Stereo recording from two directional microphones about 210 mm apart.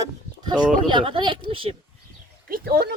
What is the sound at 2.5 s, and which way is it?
Speech, 45° right (ahead or behind).